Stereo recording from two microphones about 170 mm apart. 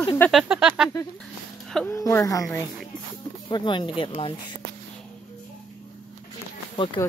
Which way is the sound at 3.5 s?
25° left (ahead or behind).